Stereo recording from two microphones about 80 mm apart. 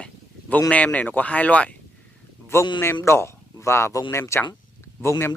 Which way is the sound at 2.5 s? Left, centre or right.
Left.